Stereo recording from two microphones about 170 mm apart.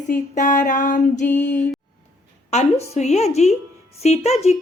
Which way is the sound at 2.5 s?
40° left (ahead or behind).